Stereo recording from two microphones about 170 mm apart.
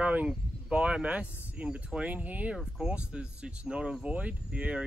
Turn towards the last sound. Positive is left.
turn(degrees=-5)  # may be behind; listen again after turning